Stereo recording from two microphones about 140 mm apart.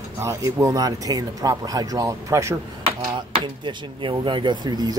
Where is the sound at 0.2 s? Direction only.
20° right (ahead or behind).